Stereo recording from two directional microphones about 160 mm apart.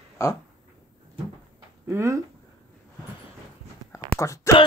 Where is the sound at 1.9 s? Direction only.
20° right (ahead or behind).